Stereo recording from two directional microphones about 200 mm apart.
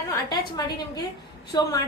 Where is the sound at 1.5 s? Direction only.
20° left (ahead or behind).